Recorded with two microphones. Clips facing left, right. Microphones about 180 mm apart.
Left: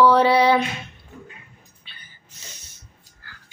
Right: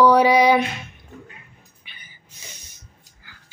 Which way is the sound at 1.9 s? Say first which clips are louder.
Right 1 dB; 15° right (ahead or behind).